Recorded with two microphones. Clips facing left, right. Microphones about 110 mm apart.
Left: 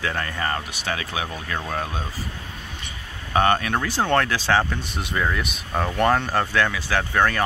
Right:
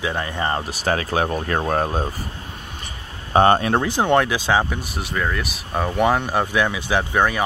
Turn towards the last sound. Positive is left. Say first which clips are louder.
# right 2 dB
turn(degrees=-15)  # may be behind; listen again after turning